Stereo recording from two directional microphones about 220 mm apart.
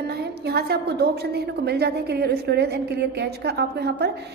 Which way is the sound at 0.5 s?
45° right (ahead or behind).